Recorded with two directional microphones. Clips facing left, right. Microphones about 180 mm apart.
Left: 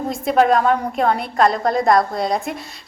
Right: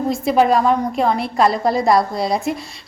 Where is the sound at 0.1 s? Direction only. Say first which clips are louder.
Even; centre (ahead or behind).